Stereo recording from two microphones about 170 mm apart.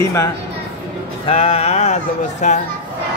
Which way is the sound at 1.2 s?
40° left (ahead or behind).